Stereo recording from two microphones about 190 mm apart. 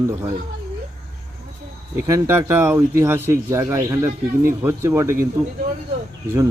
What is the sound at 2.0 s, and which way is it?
A man's voice, 15° right (ahead or behind).